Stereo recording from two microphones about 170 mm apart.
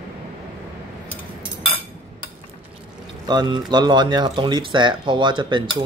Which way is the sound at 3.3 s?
25° right (ahead or behind).